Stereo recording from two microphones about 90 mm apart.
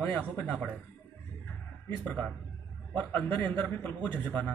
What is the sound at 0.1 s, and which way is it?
Speech, 20° left (ahead or behind).